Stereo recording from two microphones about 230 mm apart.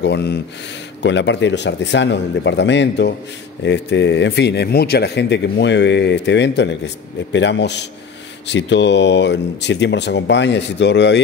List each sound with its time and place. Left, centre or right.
0.0 s speech: left